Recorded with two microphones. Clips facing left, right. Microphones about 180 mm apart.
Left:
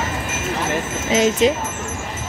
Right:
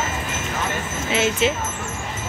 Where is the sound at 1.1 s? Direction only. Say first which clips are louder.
Left 5 dB; 40° left (ahead or behind).